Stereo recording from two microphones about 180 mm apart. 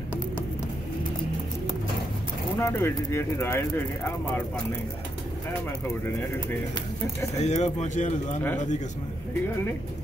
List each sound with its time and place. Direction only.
2.6 s speech: 15° left (ahead or behind)
7.3 s speech: 40° left (ahead or behind)